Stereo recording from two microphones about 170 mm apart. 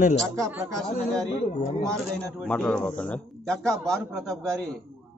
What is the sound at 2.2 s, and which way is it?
A man's voice, 5° left (ahead or behind).